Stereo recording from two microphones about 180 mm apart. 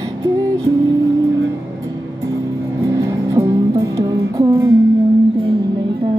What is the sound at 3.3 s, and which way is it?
Music, 20° right (ahead or behind).